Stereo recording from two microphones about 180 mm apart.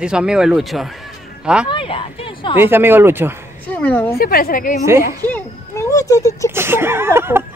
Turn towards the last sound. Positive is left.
turn(degrees=-15)  # may be behind; listen again after turning